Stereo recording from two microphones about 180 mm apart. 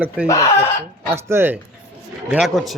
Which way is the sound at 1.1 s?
15° right (ahead or behind).